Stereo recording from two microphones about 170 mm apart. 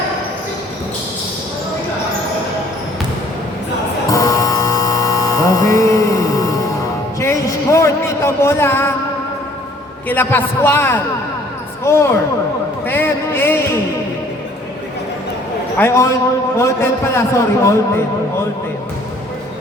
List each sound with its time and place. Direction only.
4.1 s mains hum: 20° left (ahead or behind)
7.2 s a man's voice: 15° left (ahead or behind)
10.1 s a man's voice: 10° left (ahead or behind)
12.8 s a sound: 15° left (ahead or behind)
15.8 s a man's voice: 15° left (ahead or behind)
17.2 s a man's voice: 15° left (ahead or behind)